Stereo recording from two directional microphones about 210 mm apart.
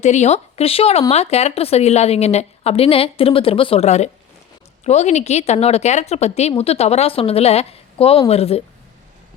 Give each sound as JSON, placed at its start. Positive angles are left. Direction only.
{"t": 0.0, "sound": "a woman's voice", "side_deg": 35}